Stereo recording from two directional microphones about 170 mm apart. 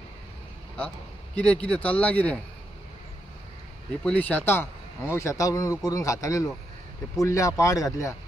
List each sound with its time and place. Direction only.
0.7 s a man's voice: 5° left (ahead or behind)
4.0 s a man's voice: 10° left (ahead or behind)